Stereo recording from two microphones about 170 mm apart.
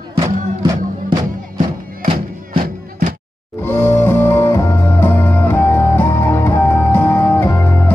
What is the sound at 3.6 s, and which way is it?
Music, 15° left (ahead or behind).